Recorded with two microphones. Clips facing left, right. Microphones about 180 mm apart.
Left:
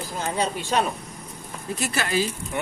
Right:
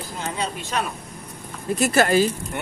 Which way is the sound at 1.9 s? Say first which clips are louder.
Right 8 dB; 45° right (ahead or behind).